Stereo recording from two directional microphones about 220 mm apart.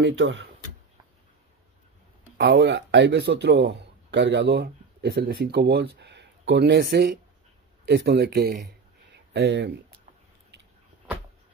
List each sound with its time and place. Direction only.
0.0 s speech: 60° right (ahead or behind)
2.3 s speech: 45° right (ahead or behind)